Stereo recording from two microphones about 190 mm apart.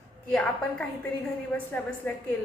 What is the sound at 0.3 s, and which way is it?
Speech, 5° left (ahead or behind).